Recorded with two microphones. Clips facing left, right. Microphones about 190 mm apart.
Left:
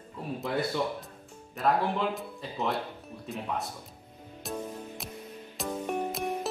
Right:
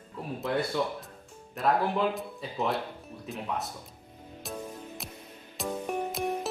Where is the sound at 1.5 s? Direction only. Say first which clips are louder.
Right 1 dB; centre (ahead or behind).